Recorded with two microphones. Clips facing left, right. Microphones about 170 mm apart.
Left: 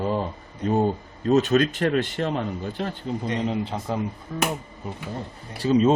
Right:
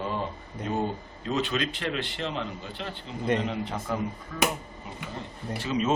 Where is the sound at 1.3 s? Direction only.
45° left (ahead or behind).